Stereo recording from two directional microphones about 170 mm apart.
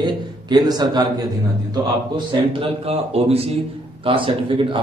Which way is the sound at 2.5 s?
35° right (ahead or behind).